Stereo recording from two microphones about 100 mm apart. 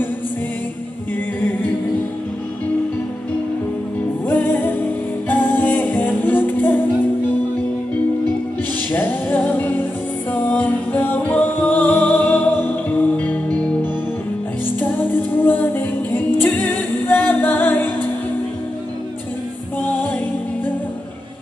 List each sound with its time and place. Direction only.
4.3 s music: 20° left (ahead or behind)
8.9 s music: 20° left (ahead or behind)
14.8 s a capella: 20° left (ahead or behind)